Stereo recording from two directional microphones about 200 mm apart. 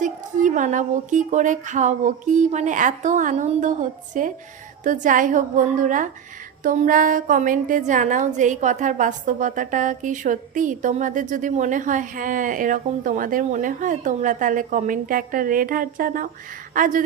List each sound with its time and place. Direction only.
0.0 s a woman's voice: 40° right (ahead or behind)